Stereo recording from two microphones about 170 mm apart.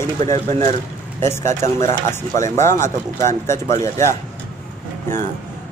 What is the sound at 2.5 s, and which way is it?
Speech, 15° left (ahead or behind).